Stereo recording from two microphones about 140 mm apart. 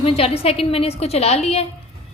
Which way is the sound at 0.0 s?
45° left (ahead or behind).